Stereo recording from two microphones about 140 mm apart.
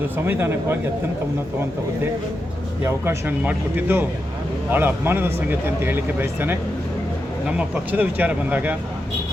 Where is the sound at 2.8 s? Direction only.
15° right (ahead or behind).